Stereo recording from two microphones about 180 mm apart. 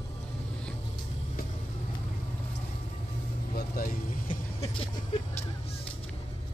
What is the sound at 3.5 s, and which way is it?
Vehicle, 55° left (ahead or behind).